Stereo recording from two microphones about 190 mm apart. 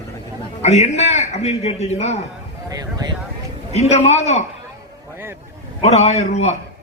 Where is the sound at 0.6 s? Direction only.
35° left (ahead or behind).